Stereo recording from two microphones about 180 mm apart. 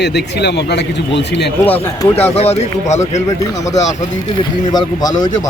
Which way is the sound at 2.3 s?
35° left (ahead or behind).